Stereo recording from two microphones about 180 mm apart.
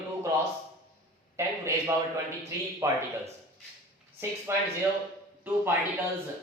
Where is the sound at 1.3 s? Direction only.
15° right (ahead or behind).